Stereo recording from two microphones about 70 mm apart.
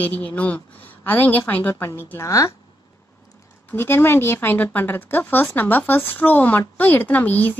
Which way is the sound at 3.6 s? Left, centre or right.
Left.